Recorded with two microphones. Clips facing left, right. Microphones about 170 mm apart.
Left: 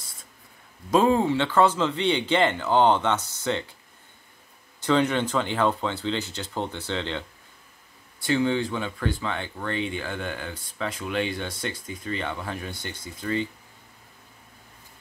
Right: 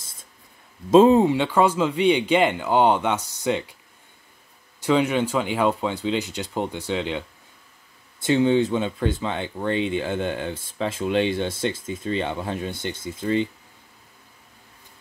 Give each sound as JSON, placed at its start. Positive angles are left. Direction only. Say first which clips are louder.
{"t": 0.8, "sound": "speech", "louder": "right 6 dB", "side_deg": -25}
{"t": 4.7, "sound": "speech", "louder": "right 2 dB", "side_deg": -10}